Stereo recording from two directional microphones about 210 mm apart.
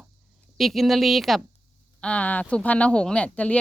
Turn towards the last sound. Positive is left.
turn(degrees=5)  # may be behind; listen again after turning